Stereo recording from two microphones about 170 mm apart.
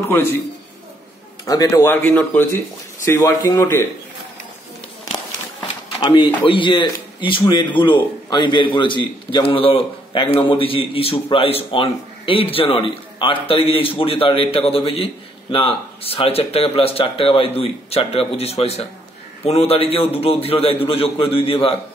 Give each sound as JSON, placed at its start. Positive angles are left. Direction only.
{"t": 1.4, "sound": "speech", "side_deg": 20}
{"t": 5.6, "sound": "speech", "side_deg": 30}